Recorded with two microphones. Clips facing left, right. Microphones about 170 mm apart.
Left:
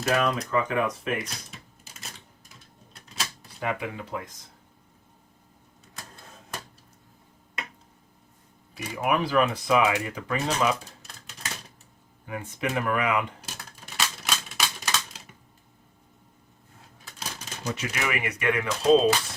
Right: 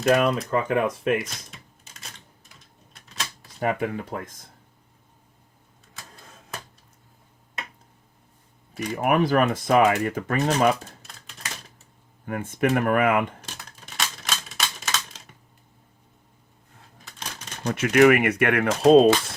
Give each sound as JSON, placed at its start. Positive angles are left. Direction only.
{"t": 0.1, "sound": "speech", "side_deg": -40}
{"t": 1.2, "sound": "typing", "side_deg": 0}
{"t": 3.6, "sound": "speech", "side_deg": -45}
{"t": 9.0, "sound": "speech", "side_deg": -45}
{"t": 12.2, "sound": "speech", "side_deg": -50}
{"t": 13.4, "sound": "typewriter", "side_deg": 5}
{"t": 17.1, "sound": "typewriter", "side_deg": 5}
{"t": 17.7, "sound": "speech", "side_deg": -50}